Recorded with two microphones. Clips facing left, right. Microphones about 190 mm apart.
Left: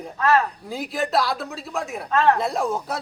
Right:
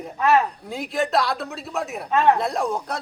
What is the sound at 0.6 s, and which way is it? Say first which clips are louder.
Speech: right 1 dB; centre (ahead or behind).